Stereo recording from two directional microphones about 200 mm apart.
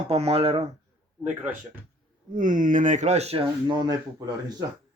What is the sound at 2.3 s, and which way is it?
Speech, 40° right (ahead or behind).